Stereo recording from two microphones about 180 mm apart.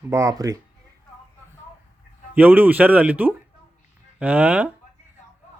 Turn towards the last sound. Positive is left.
turn(degrees=-5)  # may be behind; listen again after turning